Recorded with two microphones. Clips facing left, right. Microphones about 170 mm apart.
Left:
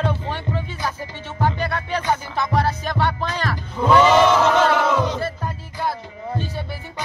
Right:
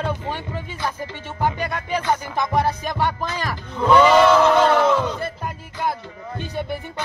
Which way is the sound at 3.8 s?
10° left (ahead or behind).